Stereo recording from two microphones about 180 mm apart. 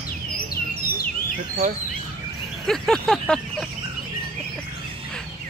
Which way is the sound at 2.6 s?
Centre (ahead or behind).